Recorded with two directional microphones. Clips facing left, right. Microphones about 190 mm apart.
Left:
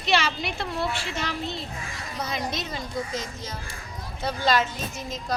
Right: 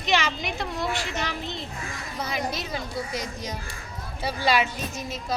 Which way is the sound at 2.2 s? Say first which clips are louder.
Right 1 dB; 10° right (ahead or behind).